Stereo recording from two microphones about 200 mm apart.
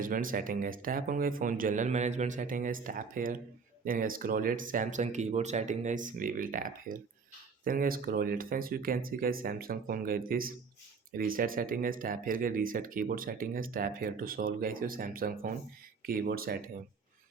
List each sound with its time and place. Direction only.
0.0 s speech: 45° right (ahead or behind)